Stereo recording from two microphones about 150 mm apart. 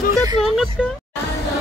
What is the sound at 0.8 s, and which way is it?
Music, 5° right (ahead or behind).